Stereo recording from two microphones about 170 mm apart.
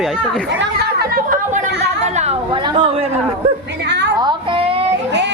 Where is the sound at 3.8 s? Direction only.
90° right.